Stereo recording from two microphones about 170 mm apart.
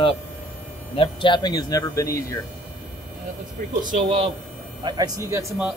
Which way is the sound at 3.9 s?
40° right (ahead or behind).